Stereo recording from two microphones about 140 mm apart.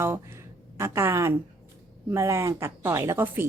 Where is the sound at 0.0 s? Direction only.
15° right (ahead or behind).